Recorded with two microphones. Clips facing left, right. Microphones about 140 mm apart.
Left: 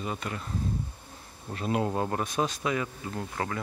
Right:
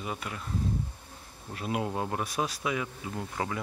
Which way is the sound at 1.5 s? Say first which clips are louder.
Left 3 dB; 5° right (ahead or behind).